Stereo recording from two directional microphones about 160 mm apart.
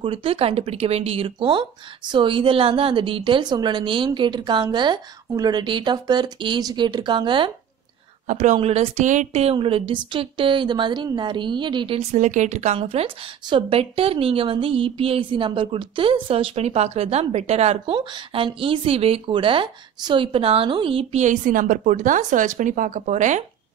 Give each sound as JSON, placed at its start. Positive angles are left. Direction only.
{"t": 0.0, "sound": "a woman's voice", "side_deg": -35}
{"t": 8.3, "sound": "a woman's voice", "side_deg": -50}
{"t": 8.5, "sound": "a woman's voice", "side_deg": -40}